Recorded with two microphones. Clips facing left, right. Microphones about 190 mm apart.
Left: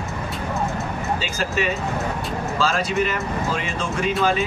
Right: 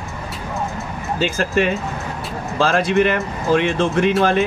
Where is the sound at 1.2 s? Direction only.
55° right (ahead or behind).